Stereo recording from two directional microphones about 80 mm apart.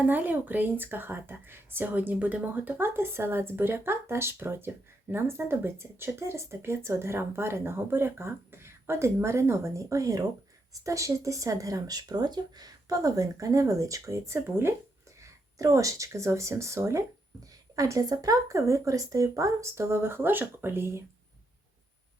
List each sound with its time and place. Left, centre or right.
0.0 s speech: right
15.2 s speech: right